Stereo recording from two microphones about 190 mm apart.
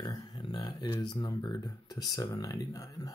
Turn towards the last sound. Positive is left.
turn(degrees=20)  # may be behind; listen again after turning